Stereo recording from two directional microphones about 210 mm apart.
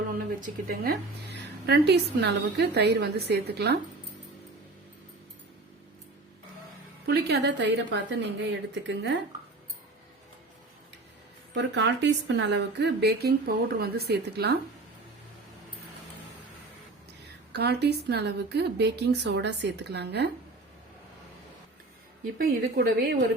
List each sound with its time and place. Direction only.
0.3 s a woman's voice: 45° right (ahead or behind)
7.0 s a woman's voice: 50° right (ahead or behind)
11.5 s a woman's voice: 55° right (ahead or behind)
17.5 s a woman's voice: 50° right (ahead or behind)
22.4 s a woman's voice: 45° right (ahead or behind)